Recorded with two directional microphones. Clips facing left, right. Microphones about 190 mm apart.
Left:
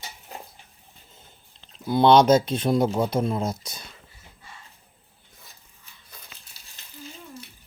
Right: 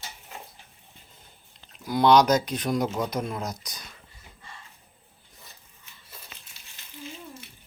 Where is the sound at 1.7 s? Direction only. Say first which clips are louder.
Left 2 dB; 25° left (ahead or behind).